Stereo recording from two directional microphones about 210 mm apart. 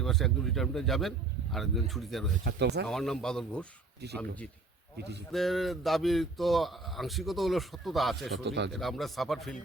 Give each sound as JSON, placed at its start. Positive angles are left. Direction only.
{"t": 0.0, "sound": "speech", "side_deg": 0}
{"t": 2.4, "sound": "speech", "side_deg": -55}
{"t": 2.8, "sound": "speech", "side_deg": 0}
{"t": 4.0, "sound": "speech", "side_deg": -50}
{"t": 5.3, "sound": "speech", "side_deg": 0}
{"t": 8.4, "sound": "speech", "side_deg": -55}
{"t": 8.7, "sound": "speech", "side_deg": 0}